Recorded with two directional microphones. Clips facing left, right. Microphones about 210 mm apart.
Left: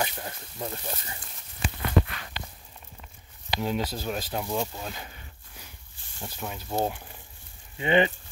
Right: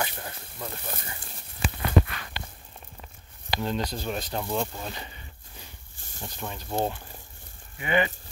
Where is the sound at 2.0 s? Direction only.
15° right (ahead or behind).